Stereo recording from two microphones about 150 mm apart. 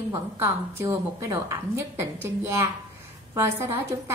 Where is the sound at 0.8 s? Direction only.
20° right (ahead or behind).